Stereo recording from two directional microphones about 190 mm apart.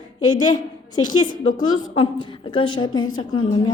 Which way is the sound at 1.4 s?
45° left (ahead or behind).